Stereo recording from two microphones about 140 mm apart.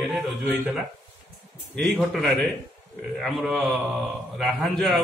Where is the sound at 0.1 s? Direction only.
Centre (ahead or behind).